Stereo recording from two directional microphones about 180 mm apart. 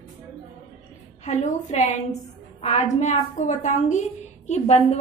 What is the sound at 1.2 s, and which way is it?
A woman's voice, 40° left (ahead or behind).